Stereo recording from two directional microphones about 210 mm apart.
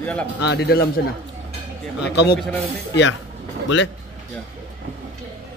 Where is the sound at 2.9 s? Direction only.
60° left (ahead or behind).